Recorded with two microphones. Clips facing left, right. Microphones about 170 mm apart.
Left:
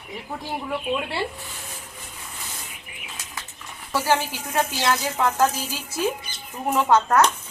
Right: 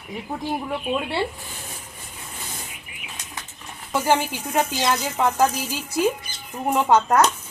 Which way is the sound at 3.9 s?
20° right (ahead or behind).